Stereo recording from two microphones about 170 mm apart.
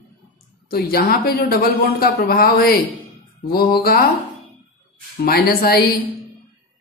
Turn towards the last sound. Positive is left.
turn(degrees=65)  # may be behind; listen again after turning